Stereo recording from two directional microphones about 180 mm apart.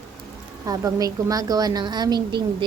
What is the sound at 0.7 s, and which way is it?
A woman's voice, 20° right (ahead or behind).